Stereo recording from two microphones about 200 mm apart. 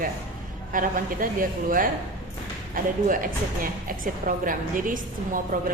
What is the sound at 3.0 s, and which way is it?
A woman's voice, 45° right (ahead or behind).